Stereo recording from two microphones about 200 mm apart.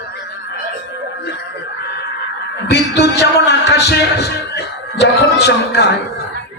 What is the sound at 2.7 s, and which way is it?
A man's voice, 55° left (ahead or behind).